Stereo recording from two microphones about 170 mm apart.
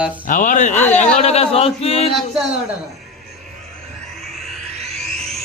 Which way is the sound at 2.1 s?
Centre (ahead or behind).